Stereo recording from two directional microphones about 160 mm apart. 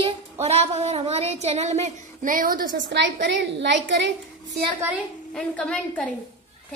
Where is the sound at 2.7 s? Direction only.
90° right.